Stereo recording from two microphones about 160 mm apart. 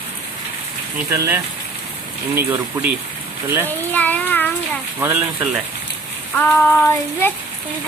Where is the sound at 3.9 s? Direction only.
10° left (ahead or behind).